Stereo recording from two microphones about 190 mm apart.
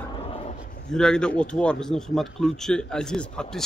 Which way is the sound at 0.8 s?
5° left (ahead or behind).